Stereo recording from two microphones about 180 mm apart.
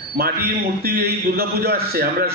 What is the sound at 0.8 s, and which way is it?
A man's voice, 60° right (ahead or behind).